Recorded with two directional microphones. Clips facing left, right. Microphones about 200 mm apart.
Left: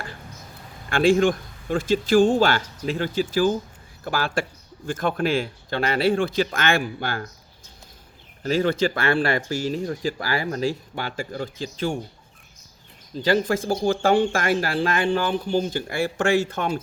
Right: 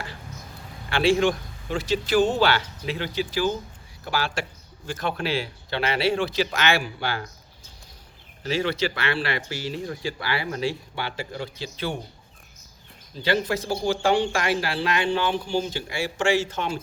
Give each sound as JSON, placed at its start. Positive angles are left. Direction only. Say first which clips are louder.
{"t": 0.9, "sound": "speech", "louder": "left 3 dB", "side_deg": 50}
{"t": 8.4, "sound": "speech", "louder": "left 4 dB", "side_deg": 45}
{"t": 13.2, "sound": "speech", "louder": "left 3 dB", "side_deg": 45}